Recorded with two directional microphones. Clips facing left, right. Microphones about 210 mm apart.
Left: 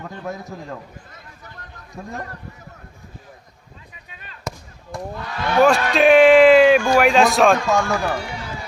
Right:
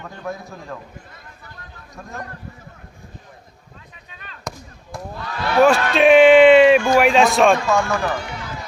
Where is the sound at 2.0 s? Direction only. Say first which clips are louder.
Left 4 dB; 30° left (ahead or behind).